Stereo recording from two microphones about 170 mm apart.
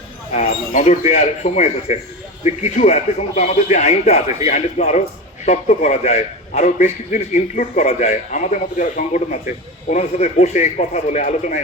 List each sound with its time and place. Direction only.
0.3 s a man's voice: 45° left (ahead or behind)